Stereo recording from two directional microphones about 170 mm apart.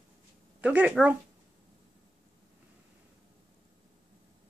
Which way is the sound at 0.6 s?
10° right (ahead or behind).